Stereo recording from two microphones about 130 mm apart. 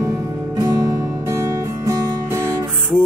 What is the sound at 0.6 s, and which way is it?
Music, 30° right (ahead or behind).